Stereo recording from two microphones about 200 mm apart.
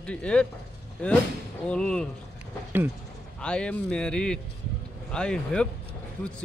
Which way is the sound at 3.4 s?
5° left (ahead or behind).